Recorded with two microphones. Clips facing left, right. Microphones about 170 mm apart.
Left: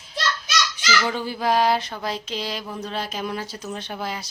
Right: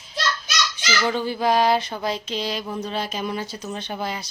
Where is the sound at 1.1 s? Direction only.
5° left (ahead or behind).